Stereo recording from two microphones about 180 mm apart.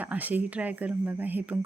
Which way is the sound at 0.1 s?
10° right (ahead or behind).